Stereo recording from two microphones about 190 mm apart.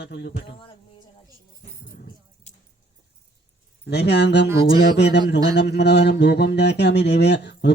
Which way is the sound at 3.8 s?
60° left (ahead or behind).